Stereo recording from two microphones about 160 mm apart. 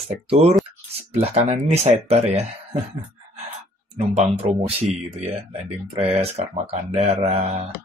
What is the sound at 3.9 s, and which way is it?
Speech, 40° right (ahead or behind).